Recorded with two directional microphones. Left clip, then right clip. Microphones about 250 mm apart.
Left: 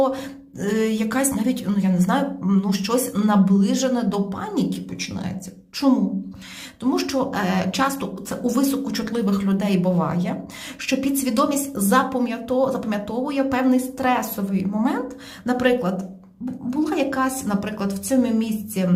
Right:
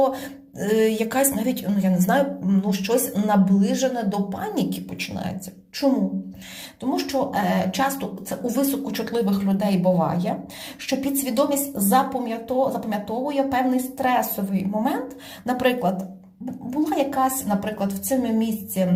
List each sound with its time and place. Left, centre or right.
0.6 s a woman's voice: centre
5.8 s a woman's voice: centre